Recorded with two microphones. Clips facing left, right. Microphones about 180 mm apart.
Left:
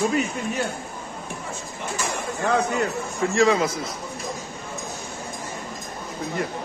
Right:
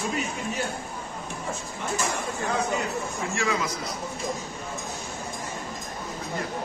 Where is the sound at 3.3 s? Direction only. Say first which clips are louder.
Left 10 dB; 35° left (ahead or behind).